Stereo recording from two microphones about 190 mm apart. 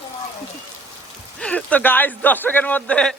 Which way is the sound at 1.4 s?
5° left (ahead or behind).